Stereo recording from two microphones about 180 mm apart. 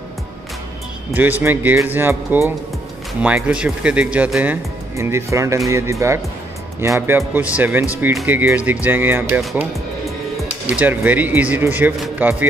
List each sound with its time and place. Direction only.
1.1 s speech: 10° right (ahead or behind)
9.4 s speech: centre (ahead or behind)